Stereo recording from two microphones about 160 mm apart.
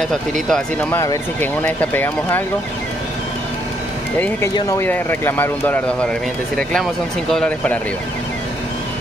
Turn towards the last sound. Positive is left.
turn(degrees=5)  # may be behind; listen again after turning